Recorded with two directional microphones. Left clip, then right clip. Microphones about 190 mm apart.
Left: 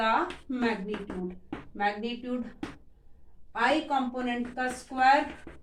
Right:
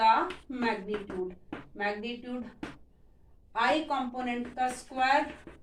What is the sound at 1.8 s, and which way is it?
Speech, 15° left (ahead or behind).